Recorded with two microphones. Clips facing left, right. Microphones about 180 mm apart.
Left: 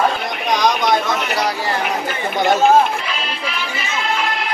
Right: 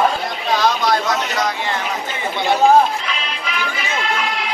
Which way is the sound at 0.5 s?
15° left (ahead or behind).